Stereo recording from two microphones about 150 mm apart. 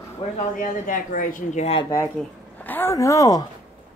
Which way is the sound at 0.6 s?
65° left (ahead or behind).